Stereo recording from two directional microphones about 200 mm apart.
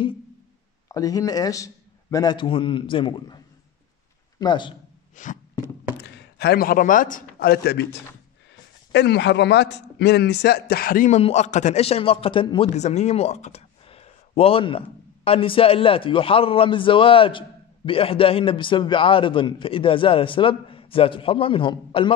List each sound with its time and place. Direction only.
0.8 s a man's voice: 15° left (ahead or behind)
5.1 s a sound: 40° left (ahead or behind)
5.9 s a man's voice: 55° left (ahead or behind); by 22.1 s 25° left (ahead or behind)